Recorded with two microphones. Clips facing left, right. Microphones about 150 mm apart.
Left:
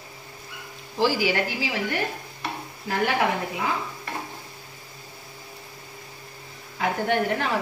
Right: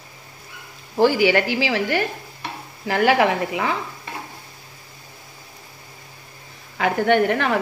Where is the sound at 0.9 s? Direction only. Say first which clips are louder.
Right 6 dB; 60° right (ahead or behind); by 3.7 s 85° right.